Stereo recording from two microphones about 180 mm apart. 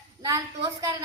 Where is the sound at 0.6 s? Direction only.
70° right (ahead or behind).